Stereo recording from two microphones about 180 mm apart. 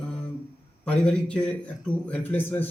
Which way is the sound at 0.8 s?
5° left (ahead or behind).